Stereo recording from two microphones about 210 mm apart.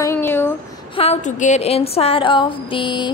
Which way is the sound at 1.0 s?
30° left (ahead or behind).